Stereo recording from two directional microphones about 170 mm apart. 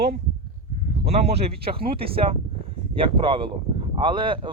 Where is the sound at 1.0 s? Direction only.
40° right (ahead or behind).